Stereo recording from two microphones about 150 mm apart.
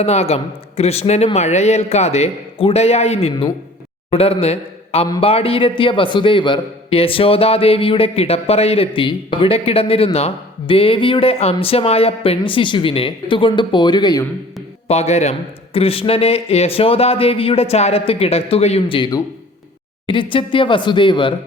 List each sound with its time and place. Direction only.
0.0 s a man's voice: 45° left (ahead or behind); by 14.3 s 25° left (ahead or behind)
14.8 s a man's voice: 45° left (ahead or behind)